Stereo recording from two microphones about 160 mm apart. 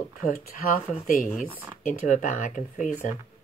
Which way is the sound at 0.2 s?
60° left (ahead or behind).